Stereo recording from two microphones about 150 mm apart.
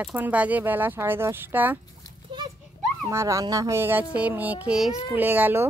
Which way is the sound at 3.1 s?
20° right (ahead or behind).